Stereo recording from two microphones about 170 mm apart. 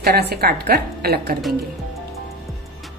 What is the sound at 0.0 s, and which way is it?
A woman's voice, 70° right (ahead or behind).